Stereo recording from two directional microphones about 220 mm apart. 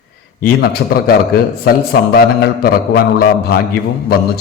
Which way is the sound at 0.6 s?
45° left (ahead or behind).